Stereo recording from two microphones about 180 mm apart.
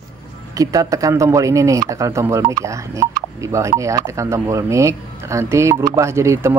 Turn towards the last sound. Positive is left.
turn(degrees=-15)  # may be behind; listen again after turning